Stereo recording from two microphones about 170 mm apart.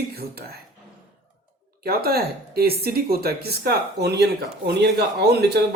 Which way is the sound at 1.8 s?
65° right (ahead or behind).